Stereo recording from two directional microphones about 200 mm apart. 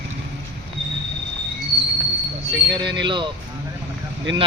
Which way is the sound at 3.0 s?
25° right (ahead or behind).